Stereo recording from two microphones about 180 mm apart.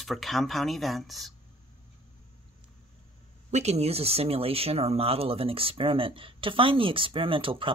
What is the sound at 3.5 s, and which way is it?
Speech, 35° right (ahead or behind).